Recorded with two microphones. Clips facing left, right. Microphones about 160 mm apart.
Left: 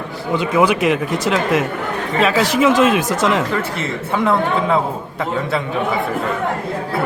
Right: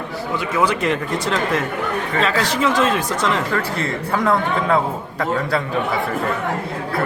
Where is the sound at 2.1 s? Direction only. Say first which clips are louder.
Left 5 dB; 10° left (ahead or behind).